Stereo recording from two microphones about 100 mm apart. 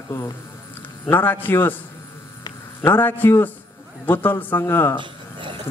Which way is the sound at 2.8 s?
20° left (ahead or behind).